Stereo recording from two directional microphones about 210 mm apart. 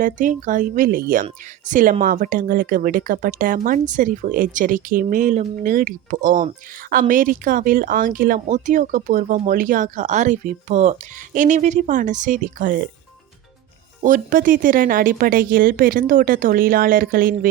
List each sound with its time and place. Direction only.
0.0 s speech: 40° right (ahead or behind)
14.0 s speech: 40° right (ahead or behind)